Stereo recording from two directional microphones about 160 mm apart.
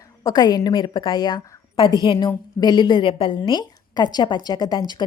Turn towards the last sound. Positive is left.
turn(degrees=25)  # may be behind; listen again after turning